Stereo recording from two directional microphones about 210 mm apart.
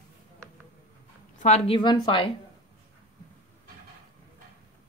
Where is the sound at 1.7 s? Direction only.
20° left (ahead or behind).